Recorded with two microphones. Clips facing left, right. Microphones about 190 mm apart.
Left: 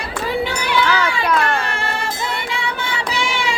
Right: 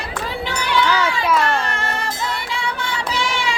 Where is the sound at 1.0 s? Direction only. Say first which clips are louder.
Even; 5° right (ahead or behind).